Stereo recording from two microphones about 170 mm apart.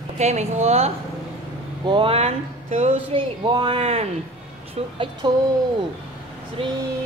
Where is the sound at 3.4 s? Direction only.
25° right (ahead or behind).